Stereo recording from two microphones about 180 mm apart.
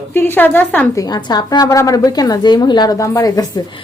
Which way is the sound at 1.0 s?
25° left (ahead or behind).